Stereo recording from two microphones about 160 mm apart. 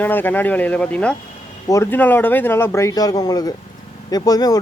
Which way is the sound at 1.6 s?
20° left (ahead or behind).